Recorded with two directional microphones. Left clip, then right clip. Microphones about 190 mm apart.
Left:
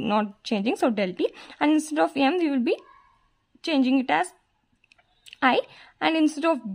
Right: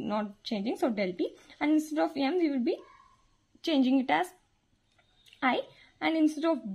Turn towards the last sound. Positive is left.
turn(degrees=25)  # may be behind; listen again after turning